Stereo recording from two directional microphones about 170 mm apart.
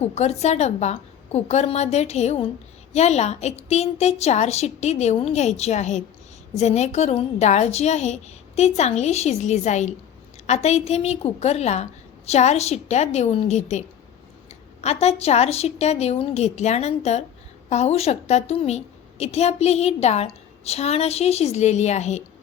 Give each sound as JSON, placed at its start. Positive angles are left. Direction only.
{"t": 0.0, "sound": "a woman's voice", "side_deg": 40}